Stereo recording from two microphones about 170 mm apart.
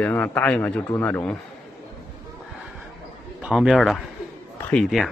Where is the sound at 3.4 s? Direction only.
5° right (ahead or behind).